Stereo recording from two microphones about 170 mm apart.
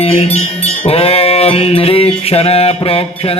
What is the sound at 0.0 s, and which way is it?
Music, 35° left (ahead or behind).